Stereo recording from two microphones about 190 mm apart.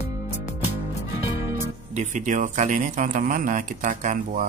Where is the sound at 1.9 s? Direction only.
40° right (ahead or behind).